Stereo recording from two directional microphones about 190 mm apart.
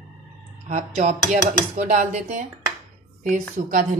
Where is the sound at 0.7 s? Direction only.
40° right (ahead or behind).